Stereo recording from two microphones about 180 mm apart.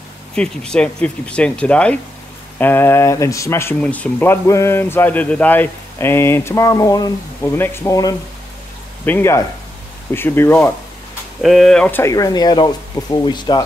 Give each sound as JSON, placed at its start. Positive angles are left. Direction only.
{"t": 0.4, "sound": "speech", "side_deg": 5}
{"t": 11.4, "sound": "speech", "side_deg": 0}